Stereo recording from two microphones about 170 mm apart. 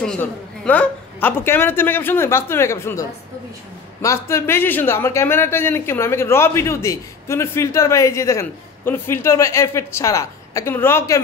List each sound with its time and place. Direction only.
0.0 s speech: 10° left (ahead or behind)